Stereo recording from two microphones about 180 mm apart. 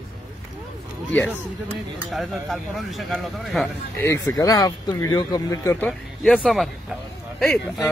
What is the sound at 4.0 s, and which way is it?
Speech, 15° left (ahead or behind).